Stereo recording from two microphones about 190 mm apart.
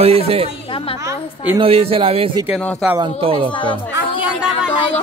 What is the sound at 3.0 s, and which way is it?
Speech, 25° right (ahead or behind).